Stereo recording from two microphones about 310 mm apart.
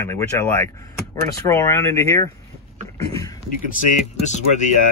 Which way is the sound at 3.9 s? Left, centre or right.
Left.